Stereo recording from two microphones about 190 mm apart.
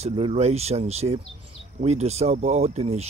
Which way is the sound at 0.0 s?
30° right (ahead or behind).